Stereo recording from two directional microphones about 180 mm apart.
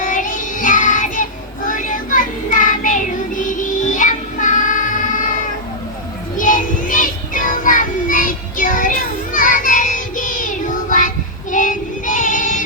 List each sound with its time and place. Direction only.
0.0 s child singing: 45° left (ahead or behind)
6.3 s child singing: 45° left (ahead or behind)